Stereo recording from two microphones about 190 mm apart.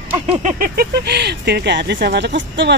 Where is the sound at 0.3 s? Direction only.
40° right (ahead or behind).